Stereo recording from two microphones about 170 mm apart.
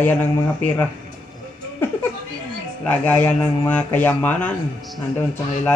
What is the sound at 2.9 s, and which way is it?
Speech, 10° left (ahead or behind).